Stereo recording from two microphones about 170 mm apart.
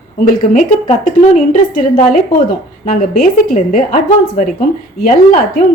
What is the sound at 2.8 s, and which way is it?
Speech, 55° left (ahead or behind).